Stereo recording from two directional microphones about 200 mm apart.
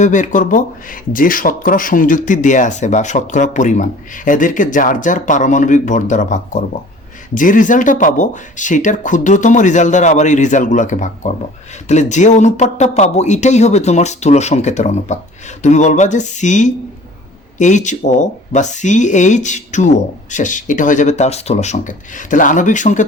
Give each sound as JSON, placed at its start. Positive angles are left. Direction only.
{"t": 0.0, "sound": "speech", "side_deg": 40}